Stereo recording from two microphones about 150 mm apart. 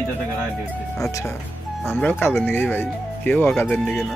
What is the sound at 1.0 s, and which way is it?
Speech, 20° left (ahead or behind).